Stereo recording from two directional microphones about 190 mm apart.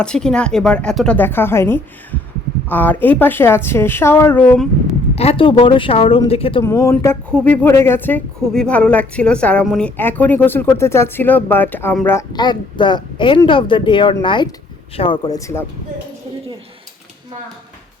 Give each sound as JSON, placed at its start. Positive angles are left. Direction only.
{"t": 0.0, "sound": "speech", "side_deg": 5}
{"t": 5.1, "sound": "speech", "side_deg": 30}
{"t": 6.6, "sound": "speech", "side_deg": 15}